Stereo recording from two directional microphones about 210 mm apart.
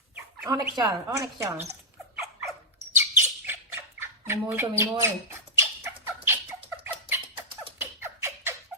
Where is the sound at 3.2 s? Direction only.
10° right (ahead or behind).